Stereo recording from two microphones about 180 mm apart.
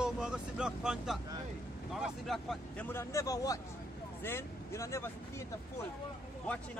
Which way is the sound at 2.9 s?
15° left (ahead or behind).